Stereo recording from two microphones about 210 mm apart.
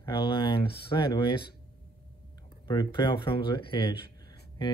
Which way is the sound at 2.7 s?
20° left (ahead or behind).